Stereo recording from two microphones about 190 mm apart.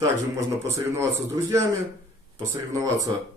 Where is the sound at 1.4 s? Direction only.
15° right (ahead or behind).